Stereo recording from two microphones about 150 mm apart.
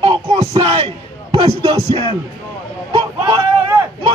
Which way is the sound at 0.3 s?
45° right (ahead or behind).